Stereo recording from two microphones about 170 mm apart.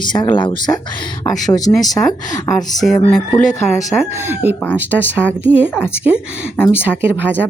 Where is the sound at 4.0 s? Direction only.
10° right (ahead or behind).